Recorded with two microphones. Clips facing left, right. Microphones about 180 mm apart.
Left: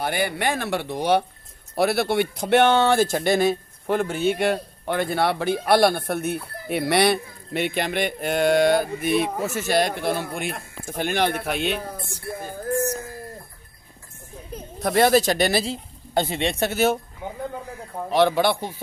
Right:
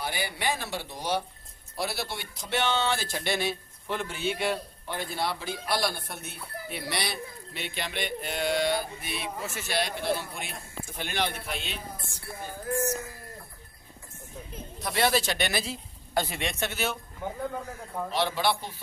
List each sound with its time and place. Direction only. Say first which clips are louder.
0.0 s speech: left 7 dB; 55° left (ahead or behind)
10.1 s speech: left 7 dB; 60° left (ahead or behind)
11.0 s speech: left 9 dB; 50° left (ahead or behind)
14.5 s speech: left 11 dB; 45° left (ahead or behind)
18.1 s speech: left 9 dB; 55° left (ahead or behind)